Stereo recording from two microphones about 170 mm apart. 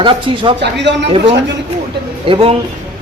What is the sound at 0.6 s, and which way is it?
Speech, 90° right.